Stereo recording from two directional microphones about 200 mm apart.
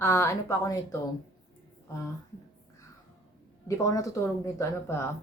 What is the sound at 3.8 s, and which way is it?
A woman's voice, 15° left (ahead or behind).